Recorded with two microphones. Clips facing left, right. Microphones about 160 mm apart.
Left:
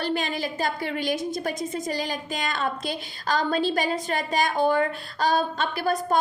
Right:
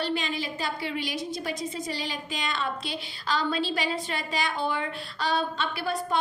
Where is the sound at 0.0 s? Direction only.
50° left (ahead or behind).